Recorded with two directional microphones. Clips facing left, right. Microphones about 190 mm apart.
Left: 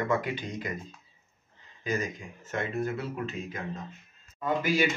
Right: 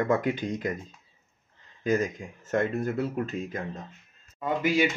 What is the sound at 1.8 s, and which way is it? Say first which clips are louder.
Speech: right 6 dB; 50° right (ahead or behind).